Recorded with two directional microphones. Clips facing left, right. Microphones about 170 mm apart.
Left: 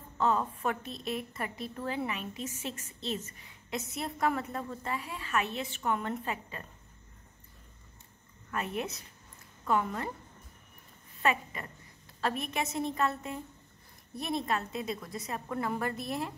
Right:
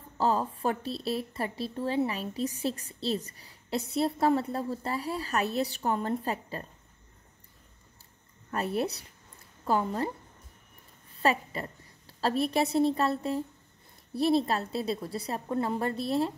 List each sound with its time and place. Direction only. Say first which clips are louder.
0.2 s a woman's voice: right 2 dB; 35° right (ahead or behind)
8.5 s a woman's voice: right 5 dB; 35° right (ahead or behind)
11.2 s a woman's voice: right 3 dB; 35° right (ahead or behind)